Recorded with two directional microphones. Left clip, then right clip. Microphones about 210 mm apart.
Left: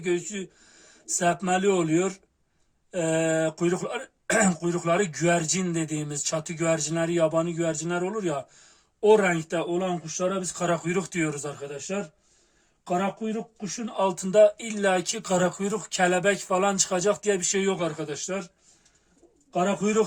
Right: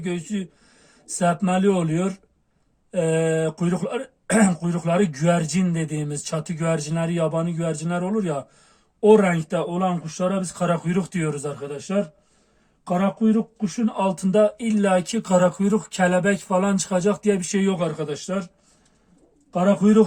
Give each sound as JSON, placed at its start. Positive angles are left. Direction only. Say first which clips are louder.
{"t": 1.2, "sound": "speech", "louder": "right 3 dB", "side_deg": 30}
{"t": 12.8, "sound": "speech", "louder": "right 5 dB", "side_deg": 25}
{"t": 19.5, "sound": "speech", "louder": "right 6 dB", "side_deg": 30}